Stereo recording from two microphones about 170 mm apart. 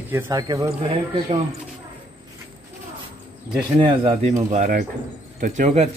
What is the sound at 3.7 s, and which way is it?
Speech, 35° right (ahead or behind).